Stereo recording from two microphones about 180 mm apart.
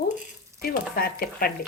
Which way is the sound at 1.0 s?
55° left (ahead or behind).